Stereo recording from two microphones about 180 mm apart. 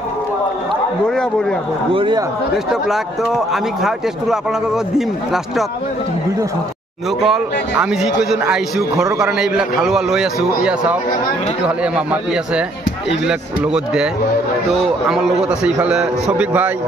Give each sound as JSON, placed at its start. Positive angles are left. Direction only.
{"t": 2.0, "sound": "speech", "side_deg": -25}
{"t": 2.5, "sound": "speech", "side_deg": 0}
{"t": 7.2, "sound": "a man's voice", "side_deg": -5}